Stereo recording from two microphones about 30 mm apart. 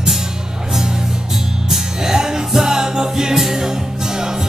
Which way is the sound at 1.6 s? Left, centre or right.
Centre.